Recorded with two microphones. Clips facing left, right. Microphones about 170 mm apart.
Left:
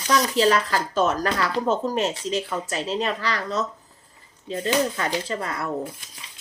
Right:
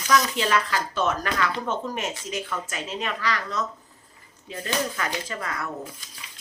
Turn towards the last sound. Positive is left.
turn(degrees=30)  # may be behind; listen again after turning